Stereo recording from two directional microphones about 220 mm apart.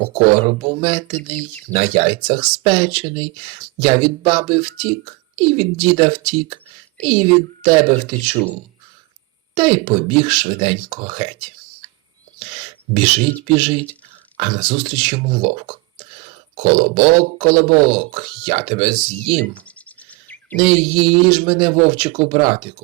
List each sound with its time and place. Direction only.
0.0 s speech: 25° right (ahead or behind)
9.6 s speech: 25° right (ahead or behind)
19.6 s chirp: 5° left (ahead or behind)
20.6 s speech: 25° right (ahead or behind)